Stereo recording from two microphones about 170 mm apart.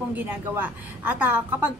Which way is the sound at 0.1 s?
10° right (ahead or behind).